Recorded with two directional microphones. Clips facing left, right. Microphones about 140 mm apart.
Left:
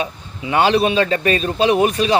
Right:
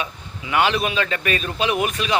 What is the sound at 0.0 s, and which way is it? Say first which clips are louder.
A man's voice: left 5 dB; 30° left (ahead or behind).